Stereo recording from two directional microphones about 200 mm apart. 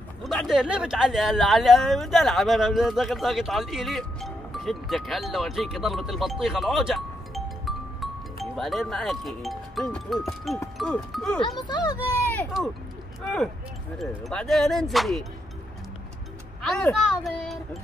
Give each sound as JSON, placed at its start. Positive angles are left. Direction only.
{"t": 0.2, "sound": "speech", "side_deg": 0}
{"t": 11.6, "sound": "speech", "side_deg": 20}
{"t": 13.9, "sound": "speech", "side_deg": 0}
{"t": 16.6, "sound": "speech", "side_deg": 5}